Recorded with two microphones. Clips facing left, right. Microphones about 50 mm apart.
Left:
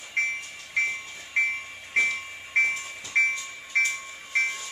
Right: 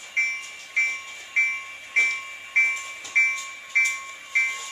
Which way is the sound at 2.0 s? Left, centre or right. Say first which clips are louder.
Right 2 dB; centre.